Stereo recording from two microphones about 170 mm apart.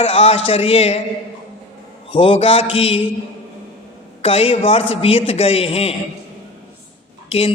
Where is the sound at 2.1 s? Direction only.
35° left (ahead or behind).